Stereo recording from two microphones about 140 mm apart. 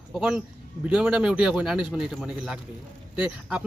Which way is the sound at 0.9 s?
5° right (ahead or behind).